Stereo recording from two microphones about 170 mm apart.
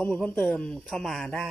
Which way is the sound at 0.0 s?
10° left (ahead or behind).